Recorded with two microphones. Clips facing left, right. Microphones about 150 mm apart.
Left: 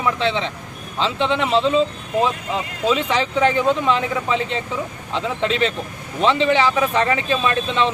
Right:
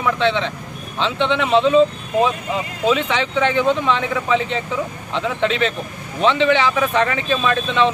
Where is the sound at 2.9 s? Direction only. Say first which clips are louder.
Even; 35° left (ahead or behind).